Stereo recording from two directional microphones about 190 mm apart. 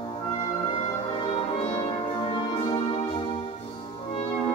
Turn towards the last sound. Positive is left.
turn(degrees=30)  # may be behind; listen again after turning